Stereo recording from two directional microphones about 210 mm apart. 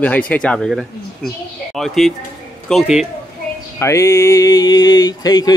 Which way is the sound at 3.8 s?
15° left (ahead or behind).